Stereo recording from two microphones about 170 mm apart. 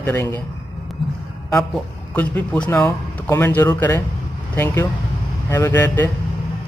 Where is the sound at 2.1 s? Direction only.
10° left (ahead or behind).